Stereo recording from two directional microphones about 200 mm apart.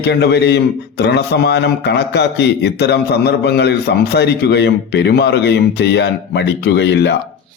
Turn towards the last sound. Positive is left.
turn(degrees=60)  # may be behind; listen again after turning